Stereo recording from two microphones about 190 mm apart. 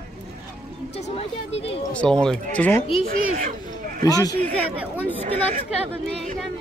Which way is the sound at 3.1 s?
45° right (ahead or behind).